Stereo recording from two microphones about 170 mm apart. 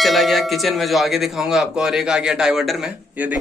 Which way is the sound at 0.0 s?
Centre (ahead or behind).